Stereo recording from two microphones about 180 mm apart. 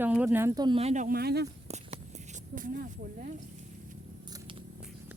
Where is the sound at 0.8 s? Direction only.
40° right (ahead or behind); by 1.5 s 60° right (ahead or behind).